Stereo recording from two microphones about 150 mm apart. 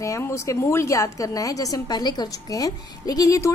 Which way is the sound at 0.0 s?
20° left (ahead or behind).